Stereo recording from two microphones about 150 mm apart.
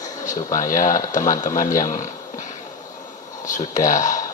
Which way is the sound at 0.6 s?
60° left (ahead or behind).